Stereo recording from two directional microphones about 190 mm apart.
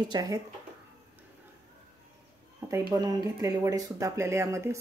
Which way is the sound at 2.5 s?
15° right (ahead or behind).